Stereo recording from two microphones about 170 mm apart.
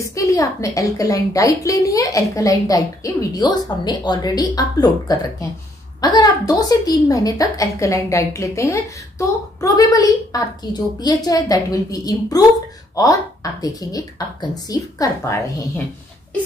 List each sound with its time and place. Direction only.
0.0 s a woman's voice: 20° left (ahead or behind)